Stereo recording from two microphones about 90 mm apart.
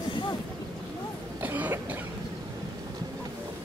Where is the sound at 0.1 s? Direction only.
65° left (ahead or behind).